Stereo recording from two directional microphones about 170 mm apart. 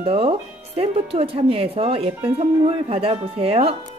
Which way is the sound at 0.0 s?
35° right (ahead or behind).